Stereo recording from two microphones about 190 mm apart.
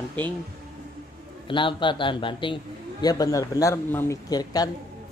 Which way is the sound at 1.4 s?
25° left (ahead or behind).